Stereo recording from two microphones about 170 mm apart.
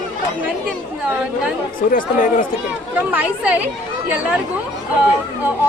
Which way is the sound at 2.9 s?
10° right (ahead or behind).